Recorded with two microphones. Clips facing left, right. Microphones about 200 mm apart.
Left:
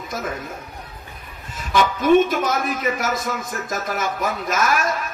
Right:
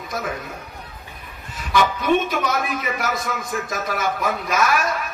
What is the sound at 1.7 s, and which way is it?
A man's voice, 50° left (ahead or behind).